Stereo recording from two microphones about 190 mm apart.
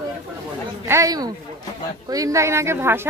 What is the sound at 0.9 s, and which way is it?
A woman's voice, 20° right (ahead or behind).